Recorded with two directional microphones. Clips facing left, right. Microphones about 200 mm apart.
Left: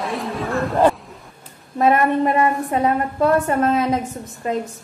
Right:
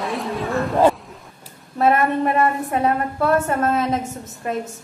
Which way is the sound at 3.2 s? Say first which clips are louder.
Left 4 dB; 15° left (ahead or behind).